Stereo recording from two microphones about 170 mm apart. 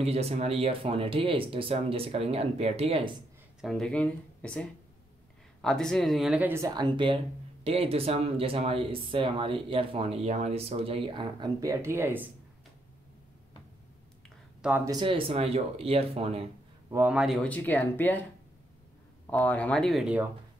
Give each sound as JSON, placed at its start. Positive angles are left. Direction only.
{"t": 0.0, "sound": "speech", "side_deg": -40}
{"t": 3.6, "sound": "speech", "side_deg": 5}
{"t": 14.9, "sound": "speech", "side_deg": -30}
{"t": 16.9, "sound": "speech", "side_deg": -10}
{"t": 17.4, "sound": "speech", "side_deg": 10}
{"t": 19.3, "sound": "speech", "side_deg": 10}